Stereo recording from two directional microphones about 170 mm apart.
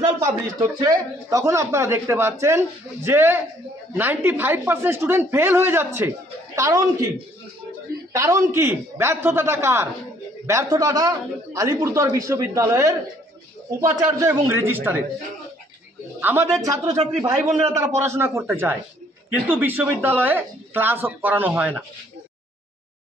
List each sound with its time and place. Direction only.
0.2 s speech: 20° right (ahead or behind)
8.1 s speech: 20° right (ahead or behind)
16.2 s a man's voice: 10° right (ahead or behind)